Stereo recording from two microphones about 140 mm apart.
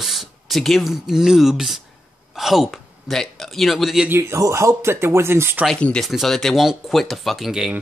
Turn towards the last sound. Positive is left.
turn(degrees=-5)  # may be behind; listen again after turning